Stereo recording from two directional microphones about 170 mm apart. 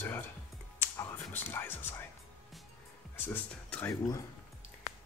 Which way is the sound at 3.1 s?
10° left (ahead or behind).